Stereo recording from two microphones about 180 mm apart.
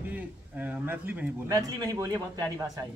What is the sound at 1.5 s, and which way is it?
A woman's voice, 20° right (ahead or behind).